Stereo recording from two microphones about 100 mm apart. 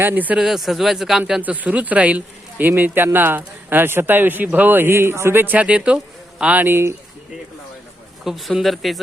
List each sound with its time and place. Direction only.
0.0 s speech: 20° right (ahead or behind)
0.3 s speech: 5° right (ahead or behind)
1.4 s speech: 15° right (ahead or behind)
8.2 s speech: centre (ahead or behind)